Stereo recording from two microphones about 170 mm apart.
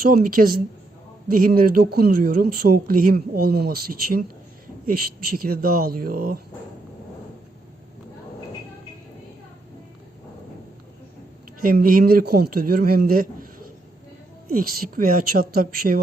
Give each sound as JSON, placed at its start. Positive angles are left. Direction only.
{"t": 0.0, "sound": "speech", "side_deg": -55}
{"t": 11.6, "sound": "speech", "side_deg": -55}